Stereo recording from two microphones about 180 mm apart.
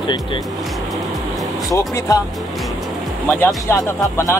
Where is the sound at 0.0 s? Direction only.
25° left (ahead or behind).